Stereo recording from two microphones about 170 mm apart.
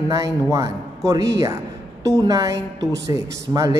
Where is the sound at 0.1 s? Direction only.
20° right (ahead or behind).